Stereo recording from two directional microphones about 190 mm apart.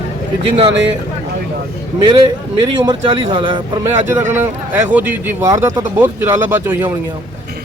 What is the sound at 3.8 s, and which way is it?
A man's voice, 10° right (ahead or behind).